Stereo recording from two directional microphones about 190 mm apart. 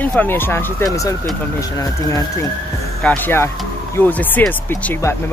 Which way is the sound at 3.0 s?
10° left (ahead or behind).